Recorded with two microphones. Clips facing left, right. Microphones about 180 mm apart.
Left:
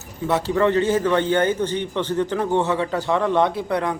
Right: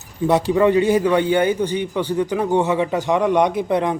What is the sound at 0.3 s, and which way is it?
A man's voice, 15° right (ahead or behind).